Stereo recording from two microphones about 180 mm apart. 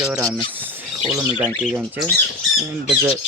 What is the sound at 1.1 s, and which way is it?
Speech, 5° right (ahead or behind).